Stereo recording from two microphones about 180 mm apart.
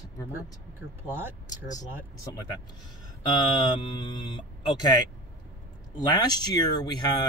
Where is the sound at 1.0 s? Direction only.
10° right (ahead or behind).